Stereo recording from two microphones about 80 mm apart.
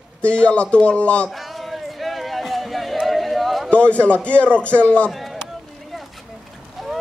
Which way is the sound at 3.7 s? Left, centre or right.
Centre.